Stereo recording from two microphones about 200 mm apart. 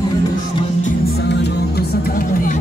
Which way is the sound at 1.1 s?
60° left (ahead or behind).